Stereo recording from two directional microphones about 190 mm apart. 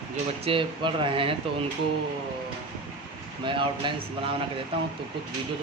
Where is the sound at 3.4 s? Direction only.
25° right (ahead or behind).